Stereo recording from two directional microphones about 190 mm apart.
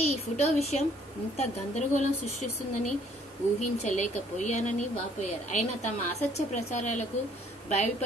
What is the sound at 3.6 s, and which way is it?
Speech, 35° left (ahead or behind).